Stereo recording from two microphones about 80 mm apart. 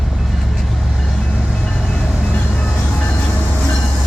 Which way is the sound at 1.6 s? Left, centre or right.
Centre.